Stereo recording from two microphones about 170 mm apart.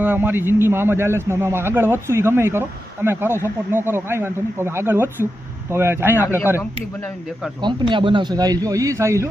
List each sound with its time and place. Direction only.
0.0 s a man's voice: 10° right (ahead or behind)
7.6 s a man's voice: 25° right (ahead or behind)